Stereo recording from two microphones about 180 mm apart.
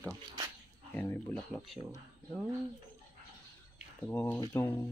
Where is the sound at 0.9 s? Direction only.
10° left (ahead or behind).